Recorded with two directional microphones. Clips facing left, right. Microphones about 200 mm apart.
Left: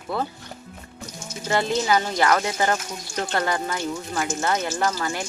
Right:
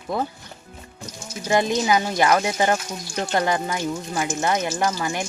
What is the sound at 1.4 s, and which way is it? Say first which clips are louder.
A woman's voice: right 2 dB; 15° right (ahead or behind).